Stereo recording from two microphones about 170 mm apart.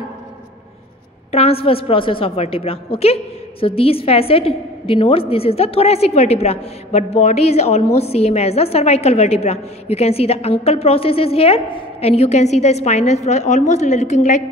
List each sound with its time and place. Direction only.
1.3 s a woman's voice: 35° left (ahead or behind)